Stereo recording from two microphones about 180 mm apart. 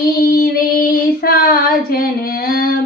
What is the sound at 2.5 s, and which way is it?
Music, 55° left (ahead or behind).